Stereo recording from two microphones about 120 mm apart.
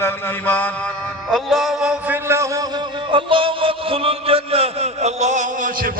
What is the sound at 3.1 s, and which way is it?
Music, 45° right (ahead or behind).